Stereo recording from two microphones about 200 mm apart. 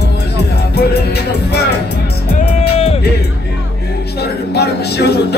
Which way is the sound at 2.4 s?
30° left (ahead or behind).